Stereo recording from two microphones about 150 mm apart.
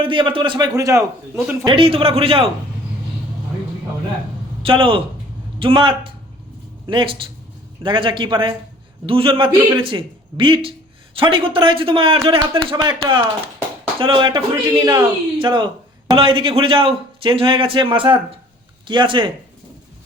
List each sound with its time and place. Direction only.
0.0 s speech: 35° right (ahead or behind)
1.6 s speech: 35° right (ahead or behind)
4.6 s speech: 35° right (ahead or behind)
12.3 s speech: 25° right (ahead or behind)